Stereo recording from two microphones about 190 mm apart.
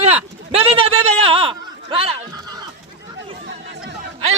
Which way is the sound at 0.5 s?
30° right (ahead or behind).